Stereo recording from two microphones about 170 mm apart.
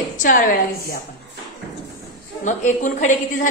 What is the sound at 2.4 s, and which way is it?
A woman's voice, 45° left (ahead or behind).